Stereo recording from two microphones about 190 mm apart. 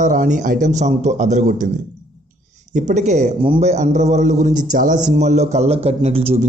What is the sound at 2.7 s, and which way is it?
A man's voice, 40° right (ahead or behind).